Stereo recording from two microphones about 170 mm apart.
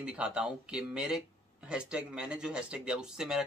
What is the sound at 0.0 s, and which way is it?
Speech, 5° right (ahead or behind).